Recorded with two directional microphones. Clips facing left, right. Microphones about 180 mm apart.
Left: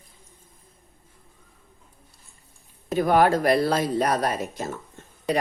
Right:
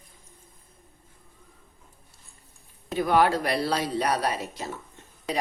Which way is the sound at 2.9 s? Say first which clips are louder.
Left 3 dB; 45° left (ahead or behind).